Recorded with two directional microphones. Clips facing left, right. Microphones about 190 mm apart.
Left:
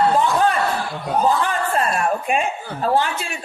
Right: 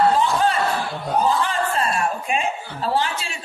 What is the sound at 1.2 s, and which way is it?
Speech, 50° left (ahead or behind).